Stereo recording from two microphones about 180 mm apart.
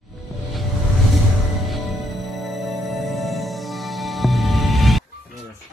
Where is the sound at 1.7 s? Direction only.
Centre (ahead or behind).